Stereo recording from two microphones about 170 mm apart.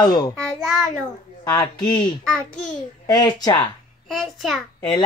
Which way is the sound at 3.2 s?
25° left (ahead or behind).